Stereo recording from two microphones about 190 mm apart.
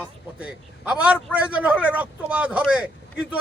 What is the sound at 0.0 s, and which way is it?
A man's voice, 5° right (ahead or behind).